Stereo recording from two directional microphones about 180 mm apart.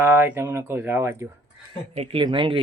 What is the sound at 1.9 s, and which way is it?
Speech, 30° right (ahead or behind).